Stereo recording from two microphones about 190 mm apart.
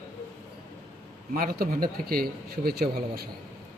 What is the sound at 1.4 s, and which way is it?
A man's voice, 50° right (ahead or behind).